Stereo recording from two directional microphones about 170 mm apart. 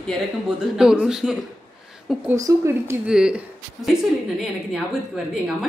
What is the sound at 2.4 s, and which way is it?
Speech, 15° right (ahead or behind).